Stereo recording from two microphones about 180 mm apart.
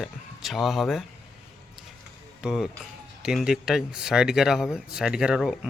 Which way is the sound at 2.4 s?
Centre (ahead or behind).